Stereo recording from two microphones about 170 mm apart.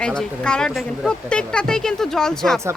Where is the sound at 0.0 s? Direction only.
5° left (ahead or behind).